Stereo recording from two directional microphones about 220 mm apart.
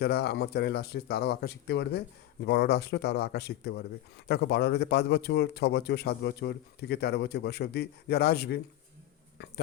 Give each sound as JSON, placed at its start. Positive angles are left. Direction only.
{"t": 0.0, "sound": "a man's voice", "side_deg": 45}